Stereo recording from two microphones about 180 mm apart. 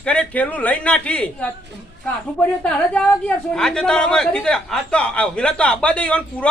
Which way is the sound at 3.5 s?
5° left (ahead or behind).